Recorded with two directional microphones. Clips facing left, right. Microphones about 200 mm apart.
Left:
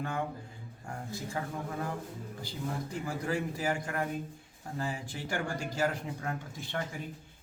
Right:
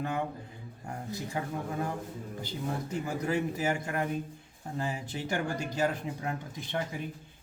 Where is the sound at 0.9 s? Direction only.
20° right (ahead or behind).